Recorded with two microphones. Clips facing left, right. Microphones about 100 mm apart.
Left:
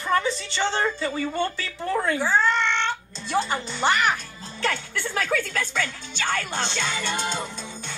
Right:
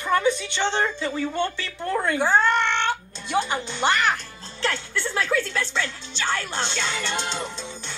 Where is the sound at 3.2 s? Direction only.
Centre (ahead or behind).